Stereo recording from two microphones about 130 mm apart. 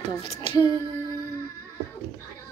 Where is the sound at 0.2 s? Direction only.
40° left (ahead or behind).